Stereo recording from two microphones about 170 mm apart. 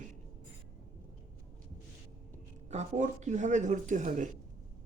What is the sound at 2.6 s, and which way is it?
Speech, 45° right (ahead or behind).